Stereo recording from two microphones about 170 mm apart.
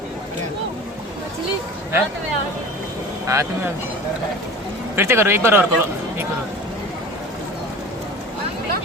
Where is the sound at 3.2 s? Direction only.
15° right (ahead or behind).